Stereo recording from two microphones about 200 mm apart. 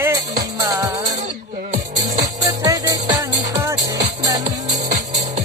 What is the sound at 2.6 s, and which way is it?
Music, 15° right (ahead or behind).